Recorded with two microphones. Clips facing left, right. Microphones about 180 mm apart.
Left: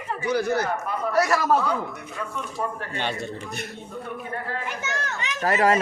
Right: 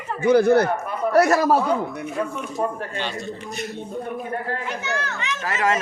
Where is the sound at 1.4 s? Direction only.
30° right (ahead or behind).